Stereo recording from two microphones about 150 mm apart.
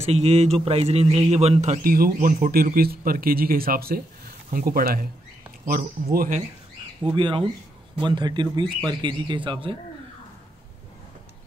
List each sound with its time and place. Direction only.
0.0 s a man's voice: 45° right (ahead or behind)
1.8 s speech: 75° right (ahead or behind)
7.1 s a man's voice: 35° right (ahead or behind)